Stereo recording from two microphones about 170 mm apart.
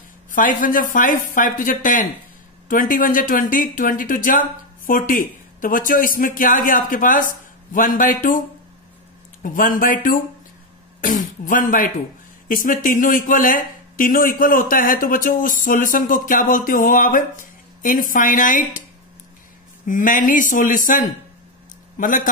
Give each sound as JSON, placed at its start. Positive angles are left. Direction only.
{"t": 0.3, "sound": "speech", "side_deg": 50}
{"t": 9.4, "sound": "speech", "side_deg": 55}
{"t": 19.9, "sound": "a man's voice", "side_deg": 50}